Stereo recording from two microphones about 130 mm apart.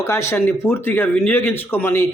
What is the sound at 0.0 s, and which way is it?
Speech, 20° left (ahead or behind).